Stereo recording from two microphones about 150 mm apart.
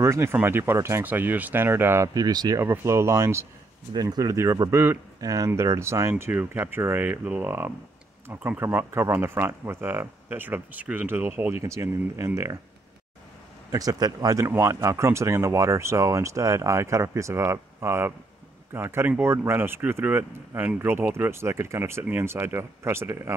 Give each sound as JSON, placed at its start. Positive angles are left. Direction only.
{"t": 0.0, "sound": "speech", "side_deg": -20}
{"t": 13.7, "sound": "speech", "side_deg": -25}